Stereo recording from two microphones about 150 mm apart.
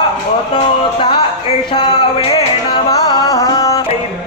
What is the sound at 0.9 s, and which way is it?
Music, 35° left (ahead or behind).